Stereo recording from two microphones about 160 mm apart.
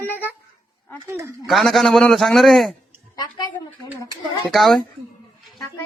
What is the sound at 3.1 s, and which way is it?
Speech, 25° left (ahead or behind).